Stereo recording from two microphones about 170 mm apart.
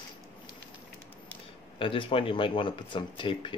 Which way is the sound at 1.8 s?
30° left (ahead or behind).